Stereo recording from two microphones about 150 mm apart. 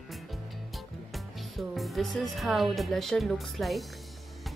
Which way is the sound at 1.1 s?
Centre (ahead or behind).